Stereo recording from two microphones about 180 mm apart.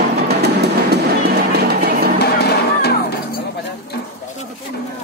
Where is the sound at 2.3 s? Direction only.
65° left (ahead or behind).